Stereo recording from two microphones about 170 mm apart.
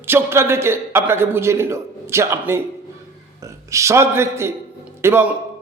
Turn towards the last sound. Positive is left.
turn(degrees=-15)  # may be behind; listen again after turning